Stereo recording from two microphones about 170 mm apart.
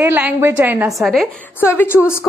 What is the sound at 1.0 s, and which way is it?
Speech, centre (ahead or behind).